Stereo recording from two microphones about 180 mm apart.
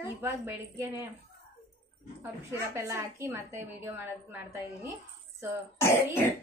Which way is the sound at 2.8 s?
15° right (ahead or behind).